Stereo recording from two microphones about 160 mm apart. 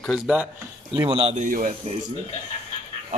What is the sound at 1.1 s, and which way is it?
Speech, 35° right (ahead or behind).